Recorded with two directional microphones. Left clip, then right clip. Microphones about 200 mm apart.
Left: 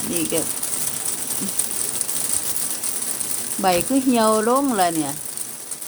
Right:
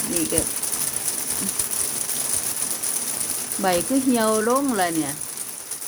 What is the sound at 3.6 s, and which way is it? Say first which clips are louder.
Speech: left 2 dB; 5° left (ahead or behind).